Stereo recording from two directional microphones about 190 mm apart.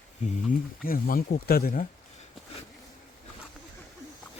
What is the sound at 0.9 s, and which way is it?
Speech, 50° left (ahead or behind).